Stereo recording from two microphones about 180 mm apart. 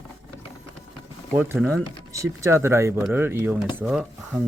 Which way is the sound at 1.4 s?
10° right (ahead or behind).